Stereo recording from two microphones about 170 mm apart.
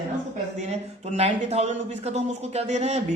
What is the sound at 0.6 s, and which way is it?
Speech, 40° right (ahead or behind).